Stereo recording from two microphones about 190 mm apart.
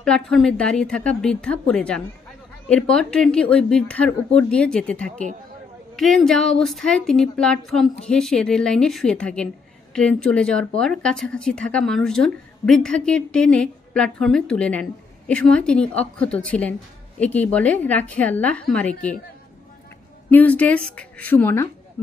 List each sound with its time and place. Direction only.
0.0 s a woman's voice: 5° left (ahead or behind)
20.2 s a woman's voice: 10° left (ahead or behind)